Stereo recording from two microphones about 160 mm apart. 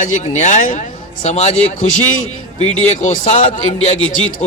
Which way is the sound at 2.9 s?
45° left (ahead or behind).